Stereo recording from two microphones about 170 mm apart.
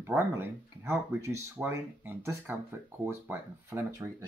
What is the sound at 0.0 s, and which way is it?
Speech, 15° right (ahead or behind).